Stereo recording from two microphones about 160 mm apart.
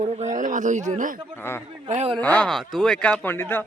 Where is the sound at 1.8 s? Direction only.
40° right (ahead or behind).